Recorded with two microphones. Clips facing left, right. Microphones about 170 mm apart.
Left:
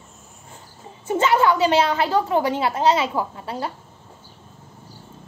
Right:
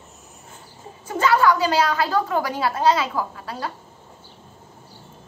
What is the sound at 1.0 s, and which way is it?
A woman's voice, 25° left (ahead or behind).